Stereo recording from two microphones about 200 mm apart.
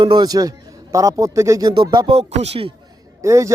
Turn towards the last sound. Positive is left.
turn(degrees=-15)  # may be behind; listen again after turning